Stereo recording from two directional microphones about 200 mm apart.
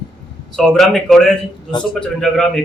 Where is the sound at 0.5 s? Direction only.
5° left (ahead or behind).